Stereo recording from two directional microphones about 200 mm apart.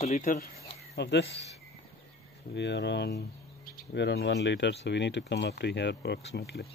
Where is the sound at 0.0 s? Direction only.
35° left (ahead or behind).